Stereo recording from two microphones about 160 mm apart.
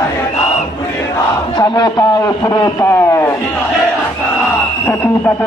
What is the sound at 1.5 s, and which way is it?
Speech, 25° left (ahead or behind).